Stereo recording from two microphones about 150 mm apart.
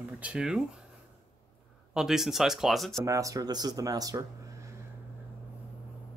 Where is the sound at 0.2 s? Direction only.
5° right (ahead or behind).